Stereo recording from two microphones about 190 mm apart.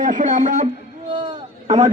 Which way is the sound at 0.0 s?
45° right (ahead or behind).